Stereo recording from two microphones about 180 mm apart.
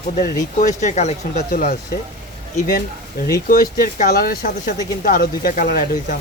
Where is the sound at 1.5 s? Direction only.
55° left (ahead or behind).